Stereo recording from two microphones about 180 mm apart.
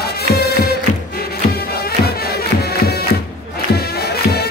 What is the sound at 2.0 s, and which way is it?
Music, 60° left (ahead or behind).